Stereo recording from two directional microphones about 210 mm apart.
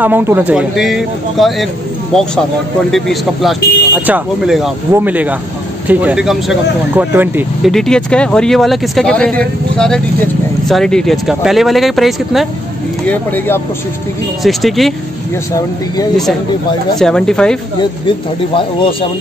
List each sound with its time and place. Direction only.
0.0 s speech: 10° right (ahead or behind)
2.9 s speech: centre (ahead or behind)
7.7 s speech: 5° left (ahead or behind)
17.0 s speech: 5° left (ahead or behind)
18.6 s speech: 25° left (ahead or behind)